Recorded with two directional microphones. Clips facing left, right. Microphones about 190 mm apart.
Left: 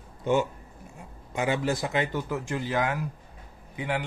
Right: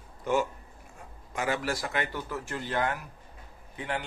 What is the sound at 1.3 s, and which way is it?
A man's voice, 20° left (ahead or behind).